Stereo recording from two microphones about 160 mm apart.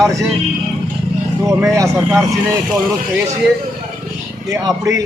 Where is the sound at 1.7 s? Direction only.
20° right (ahead or behind).